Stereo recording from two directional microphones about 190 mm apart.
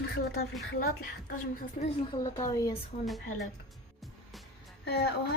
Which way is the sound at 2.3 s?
20° left (ahead or behind).